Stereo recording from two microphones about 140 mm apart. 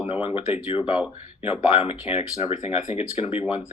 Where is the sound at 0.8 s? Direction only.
10° right (ahead or behind).